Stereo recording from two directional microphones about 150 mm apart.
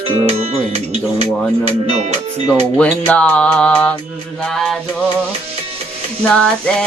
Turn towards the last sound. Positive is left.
turn(degrees=5)  # may be behind; listen again after turning